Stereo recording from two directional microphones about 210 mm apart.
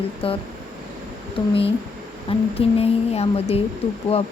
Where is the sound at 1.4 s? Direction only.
25° left (ahead or behind).